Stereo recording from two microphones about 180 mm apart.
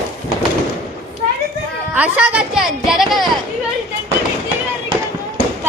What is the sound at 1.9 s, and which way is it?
Speech, 10° right (ahead or behind).